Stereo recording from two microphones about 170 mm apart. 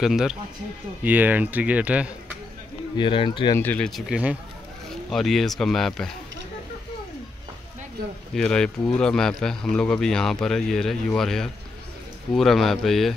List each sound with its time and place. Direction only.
0.0 s speech: 5° right (ahead or behind)
3.0 s speech: 30° left (ahead or behind)
3.5 s speech: 10° left (ahead or behind)
8.4 s speech: 5° left (ahead or behind)